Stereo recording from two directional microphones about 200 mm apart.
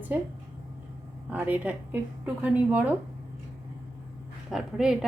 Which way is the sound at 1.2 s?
5° right (ahead or behind).